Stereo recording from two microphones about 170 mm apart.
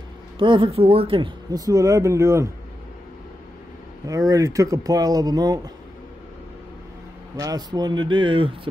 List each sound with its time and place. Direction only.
0.4 s speech: 30° right (ahead or behind)
4.1 s speech: 20° right (ahead or behind)
7.3 s speech: 20° right (ahead or behind)